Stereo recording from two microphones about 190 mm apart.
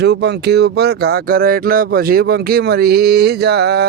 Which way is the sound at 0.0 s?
60° right (ahead or behind).